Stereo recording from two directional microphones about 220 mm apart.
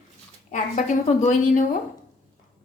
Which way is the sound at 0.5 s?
35° left (ahead or behind).